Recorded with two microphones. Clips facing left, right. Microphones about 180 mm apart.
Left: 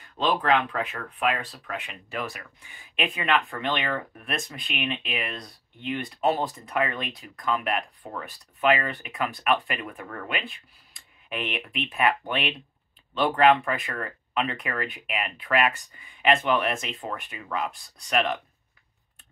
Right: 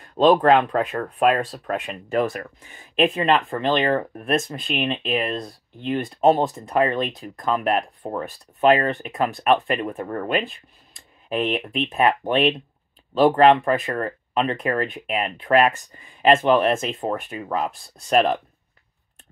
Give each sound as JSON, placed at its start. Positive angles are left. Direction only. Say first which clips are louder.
{"t": 0.2, "sound": "speech", "louder": "right 8 dB", "side_deg": -45}
{"t": 16.2, "sound": "speech", "louder": "right 7 dB", "side_deg": -45}